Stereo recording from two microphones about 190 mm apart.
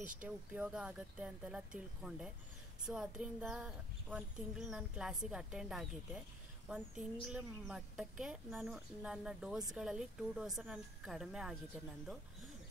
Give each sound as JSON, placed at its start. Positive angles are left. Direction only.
{"t": 0.0, "sound": "speech", "side_deg": -45}
{"t": 0.6, "sound": "a woman's voice", "side_deg": -5}